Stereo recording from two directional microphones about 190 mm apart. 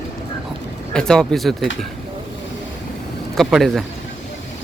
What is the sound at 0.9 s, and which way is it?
Speech, 5° left (ahead or behind).